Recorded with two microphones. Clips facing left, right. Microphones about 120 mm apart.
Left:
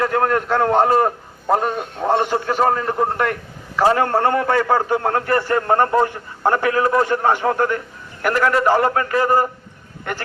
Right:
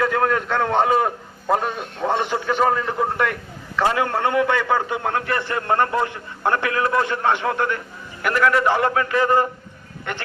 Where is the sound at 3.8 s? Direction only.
35° left (ahead or behind).